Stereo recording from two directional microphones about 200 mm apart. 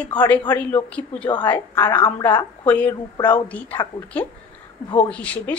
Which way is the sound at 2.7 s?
10° left (ahead or behind).